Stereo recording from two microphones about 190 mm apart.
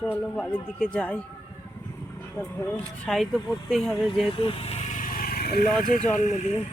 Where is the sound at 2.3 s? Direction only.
5° left (ahead or behind).